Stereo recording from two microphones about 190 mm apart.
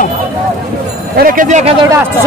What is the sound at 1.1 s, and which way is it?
Speech, 50° right (ahead or behind).